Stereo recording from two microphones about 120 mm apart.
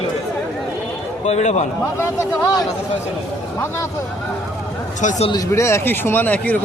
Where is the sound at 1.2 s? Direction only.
65° left (ahead or behind).